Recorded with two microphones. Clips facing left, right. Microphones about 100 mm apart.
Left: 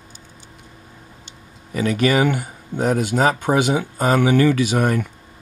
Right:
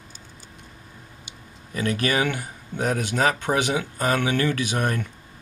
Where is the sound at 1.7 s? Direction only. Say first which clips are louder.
Left 6 dB; 15° left (ahead or behind).